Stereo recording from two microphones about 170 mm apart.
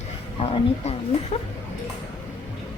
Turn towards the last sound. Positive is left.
turn(degrees=35)  # may be behind; listen again after turning